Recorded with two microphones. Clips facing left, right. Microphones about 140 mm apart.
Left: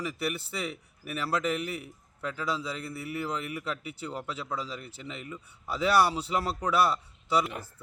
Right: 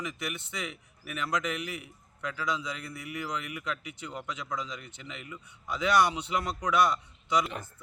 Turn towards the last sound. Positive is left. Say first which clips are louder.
# left 1 dB
turn(degrees=30)  # may be behind; listen again after turning